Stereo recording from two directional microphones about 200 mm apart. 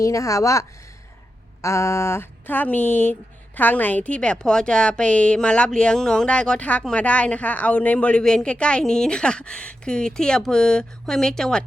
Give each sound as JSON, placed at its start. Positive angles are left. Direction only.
{"t": 0.0, "sound": "speech", "side_deg": 15}
{"t": 1.6, "sound": "speech", "side_deg": 15}